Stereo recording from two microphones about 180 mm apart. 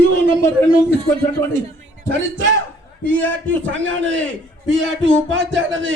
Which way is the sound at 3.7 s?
90° right.